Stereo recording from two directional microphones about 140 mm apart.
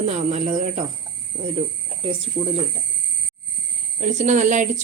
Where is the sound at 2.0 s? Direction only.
40° right (ahead or behind).